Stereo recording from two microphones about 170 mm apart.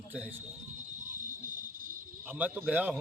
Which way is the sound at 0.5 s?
45° right (ahead or behind).